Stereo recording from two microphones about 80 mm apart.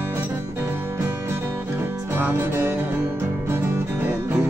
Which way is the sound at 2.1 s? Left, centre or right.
Right.